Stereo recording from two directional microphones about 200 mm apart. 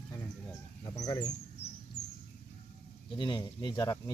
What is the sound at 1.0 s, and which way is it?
Speech, 20° left (ahead or behind).